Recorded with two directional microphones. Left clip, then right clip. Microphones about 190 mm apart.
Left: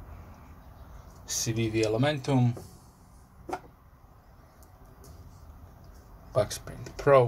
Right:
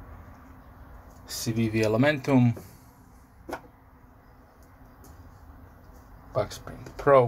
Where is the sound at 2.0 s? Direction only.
35° right (ahead or behind).